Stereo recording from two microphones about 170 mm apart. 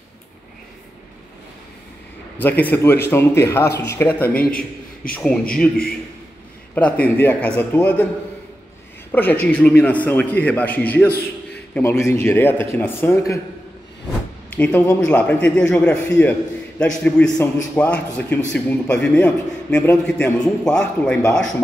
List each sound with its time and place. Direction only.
2.3 s a man's voice: 10° left (ahead or behind)
4.4 s a man's voice: 55° left (ahead or behind)
5.1 s a man's voice: 5° left (ahead or behind)
6.7 s a man's voice: 10° left (ahead or behind)
9.1 s a man's voice: 10° left (ahead or behind)
14.5 s a man's voice: 10° left (ahead or behind)